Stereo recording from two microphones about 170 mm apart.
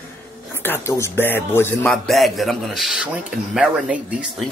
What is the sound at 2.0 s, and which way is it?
Speech, centre (ahead or behind).